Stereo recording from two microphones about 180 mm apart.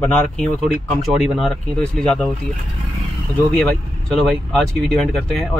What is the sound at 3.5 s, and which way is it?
Speech, 5° left (ahead or behind).